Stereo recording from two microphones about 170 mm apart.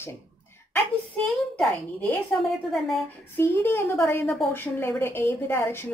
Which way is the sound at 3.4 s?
15° left (ahead or behind).